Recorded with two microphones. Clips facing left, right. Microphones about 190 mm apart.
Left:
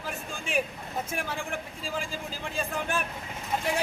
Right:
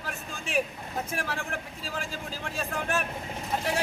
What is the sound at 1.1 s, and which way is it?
A man's voice, centre (ahead or behind).